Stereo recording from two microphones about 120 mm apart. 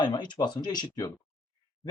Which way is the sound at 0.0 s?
40° left (ahead or behind).